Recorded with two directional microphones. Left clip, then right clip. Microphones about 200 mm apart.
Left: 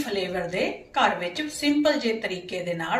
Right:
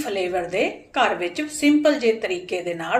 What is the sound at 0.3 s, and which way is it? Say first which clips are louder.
A woman's voice: right 4 dB; 45° right (ahead or behind).